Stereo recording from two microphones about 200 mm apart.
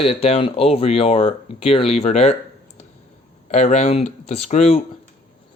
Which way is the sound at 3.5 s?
35° left (ahead or behind).